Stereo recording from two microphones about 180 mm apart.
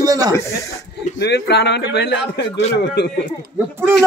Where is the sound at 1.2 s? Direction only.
65° left (ahead or behind).